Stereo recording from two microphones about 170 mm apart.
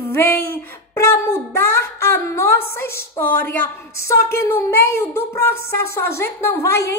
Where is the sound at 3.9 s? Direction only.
15° left (ahead or behind).